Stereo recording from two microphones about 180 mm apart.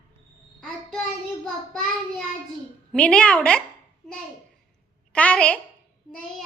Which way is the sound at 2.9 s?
5° left (ahead or behind).